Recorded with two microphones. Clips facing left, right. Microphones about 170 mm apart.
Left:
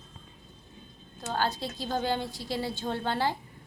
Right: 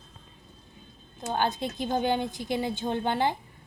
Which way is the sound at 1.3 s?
20° right (ahead or behind).